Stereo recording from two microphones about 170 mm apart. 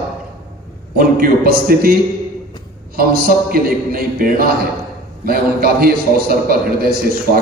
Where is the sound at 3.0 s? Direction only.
60° right (ahead or behind).